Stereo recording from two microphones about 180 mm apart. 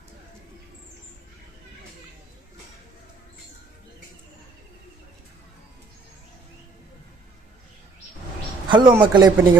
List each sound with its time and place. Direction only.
8.7 s a man's voice: 25° right (ahead or behind)